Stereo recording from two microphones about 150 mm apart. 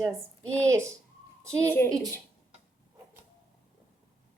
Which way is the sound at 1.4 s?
20° right (ahead or behind).